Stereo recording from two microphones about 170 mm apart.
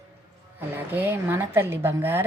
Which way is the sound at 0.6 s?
10° right (ahead or behind).